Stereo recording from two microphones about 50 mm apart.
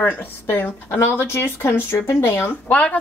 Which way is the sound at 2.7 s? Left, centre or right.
Left.